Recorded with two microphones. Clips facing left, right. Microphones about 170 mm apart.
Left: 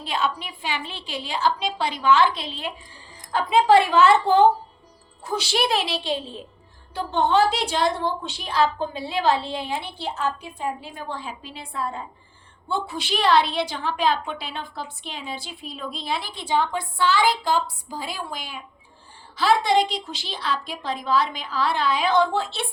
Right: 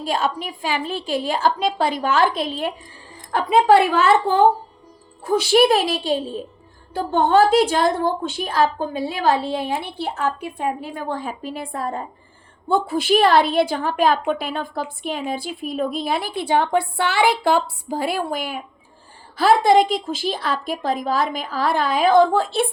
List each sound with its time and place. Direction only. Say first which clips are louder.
0.0 s a woman's voice: right 4 dB; 45° right (ahead or behind)